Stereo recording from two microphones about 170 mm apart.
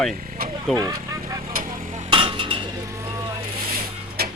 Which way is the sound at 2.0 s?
30° right (ahead or behind).